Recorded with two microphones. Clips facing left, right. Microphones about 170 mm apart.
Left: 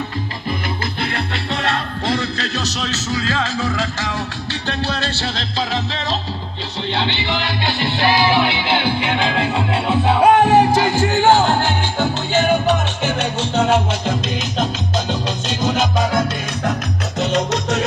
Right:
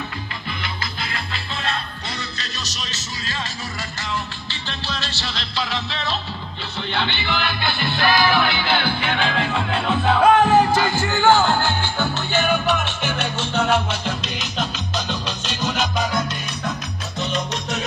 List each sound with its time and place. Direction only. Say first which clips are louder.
1.1 s music: left 7 dB; 75° left (ahead or behind)
3.7 s music: left 6 dB; 90° left; by 5.2 s 65° left (ahead or behind)
5.7 s music: left 4 dB; 40° left (ahead or behind)
15.6 s music: left 5 dB; 25° left (ahead or behind)
17.2 s salsa music: left 7 dB; 90° left